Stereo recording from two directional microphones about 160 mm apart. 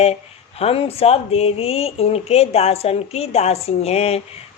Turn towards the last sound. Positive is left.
turn(degrees=40)  # may be behind; listen again after turning